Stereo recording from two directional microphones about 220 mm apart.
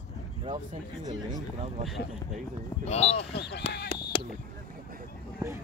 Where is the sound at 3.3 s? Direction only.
50° left (ahead or behind).